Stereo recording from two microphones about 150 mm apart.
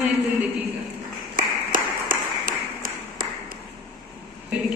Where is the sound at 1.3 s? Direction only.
65° right (ahead or behind).